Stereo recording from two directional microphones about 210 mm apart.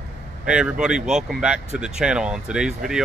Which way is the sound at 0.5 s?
5° right (ahead or behind).